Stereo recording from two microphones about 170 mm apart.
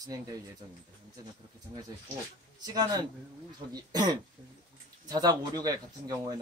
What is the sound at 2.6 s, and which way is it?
Speech, 25° right (ahead or behind).